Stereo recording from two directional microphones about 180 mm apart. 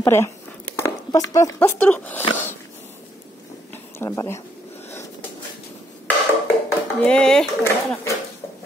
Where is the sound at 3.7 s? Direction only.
15° left (ahead or behind).